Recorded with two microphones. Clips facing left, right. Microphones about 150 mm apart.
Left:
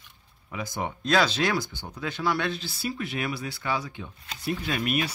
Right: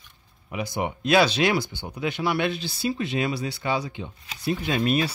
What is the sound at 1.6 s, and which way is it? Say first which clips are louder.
Speech: right 3 dB; 65° right (ahead or behind).